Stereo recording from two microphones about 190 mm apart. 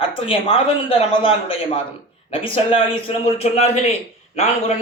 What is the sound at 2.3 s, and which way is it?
A man's voice, 30° left (ahead or behind).